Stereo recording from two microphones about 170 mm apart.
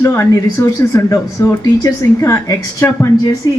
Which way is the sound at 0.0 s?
15° left (ahead or behind).